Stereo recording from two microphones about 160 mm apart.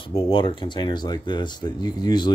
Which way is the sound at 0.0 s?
35° left (ahead or behind).